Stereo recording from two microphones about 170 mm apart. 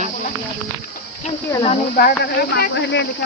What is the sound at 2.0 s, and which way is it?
Speech, 65° left (ahead or behind).